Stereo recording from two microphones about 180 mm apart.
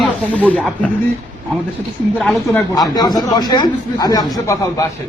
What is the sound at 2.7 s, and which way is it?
Speech, 20° left (ahead or behind).